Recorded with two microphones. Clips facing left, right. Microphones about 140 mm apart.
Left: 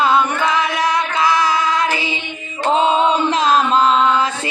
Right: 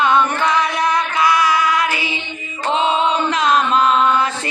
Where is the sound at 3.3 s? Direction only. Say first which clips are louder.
Left 1 dB; 30° left (ahead or behind).